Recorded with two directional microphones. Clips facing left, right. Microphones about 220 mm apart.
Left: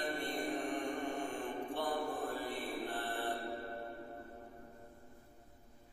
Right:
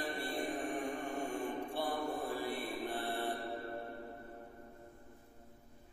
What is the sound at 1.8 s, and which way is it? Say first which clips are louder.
Mantra: even; 10° right (ahead or behind).